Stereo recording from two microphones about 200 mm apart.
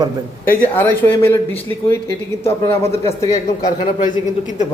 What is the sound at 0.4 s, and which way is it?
Speech, 10° left (ahead or behind).